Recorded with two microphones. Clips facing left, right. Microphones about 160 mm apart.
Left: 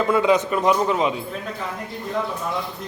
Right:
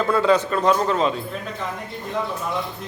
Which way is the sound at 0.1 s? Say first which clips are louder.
Right 1 dB; 15° left (ahead or behind).